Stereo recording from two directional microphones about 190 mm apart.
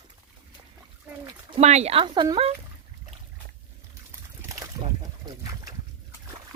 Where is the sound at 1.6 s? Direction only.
35° right (ahead or behind).